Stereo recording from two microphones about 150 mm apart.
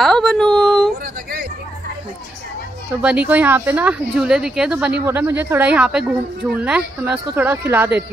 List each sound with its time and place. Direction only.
0.0 s a sound: 5° left (ahead or behind)
1.0 s hubbub: 80° right
3.0 s a woman's voice: 10° right (ahead or behind)